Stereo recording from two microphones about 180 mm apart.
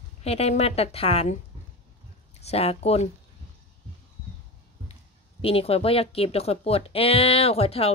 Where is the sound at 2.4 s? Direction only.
35° left (ahead or behind).